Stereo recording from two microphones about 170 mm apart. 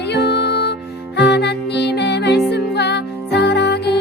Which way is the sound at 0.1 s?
80° left.